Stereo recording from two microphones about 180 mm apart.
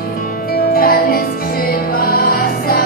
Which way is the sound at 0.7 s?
55° left (ahead or behind).